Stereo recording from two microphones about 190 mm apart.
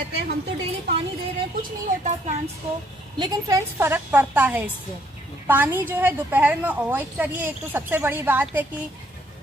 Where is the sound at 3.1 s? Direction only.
20° right (ahead or behind).